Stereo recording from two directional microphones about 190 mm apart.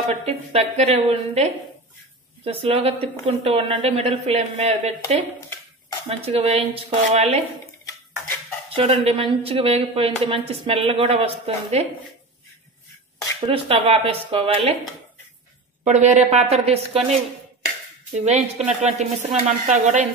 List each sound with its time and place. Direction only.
0.1 s speech: 35° right (ahead or behind)
8.7 s speech: 30° right (ahead or behind)
13.5 s speech: 30° right (ahead or behind)
15.8 s speech: 35° right (ahead or behind)
18.2 s speech: 35° right (ahead or behind)